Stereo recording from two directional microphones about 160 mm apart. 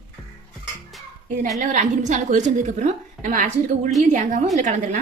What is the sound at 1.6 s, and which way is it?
A woman's voice, 50° right (ahead or behind).